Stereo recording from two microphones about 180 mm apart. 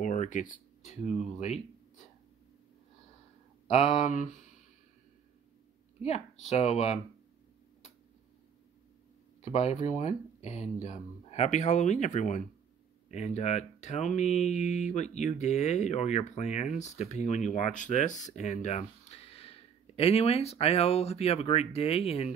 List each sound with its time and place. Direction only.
0.0 s speech: 45° left (ahead or behind)
3.7 s speech: 40° left (ahead or behind)
6.5 s speech: 35° left (ahead or behind)
9.4 s speech: 40° left (ahead or behind)